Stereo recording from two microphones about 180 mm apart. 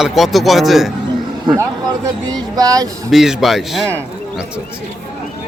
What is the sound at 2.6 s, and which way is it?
Speech, 20° right (ahead or behind).